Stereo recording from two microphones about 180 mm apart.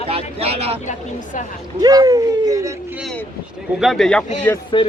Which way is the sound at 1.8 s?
20° right (ahead or behind).